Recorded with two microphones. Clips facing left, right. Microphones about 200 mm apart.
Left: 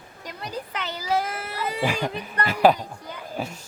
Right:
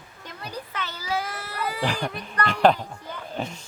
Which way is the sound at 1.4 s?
25° left (ahead or behind).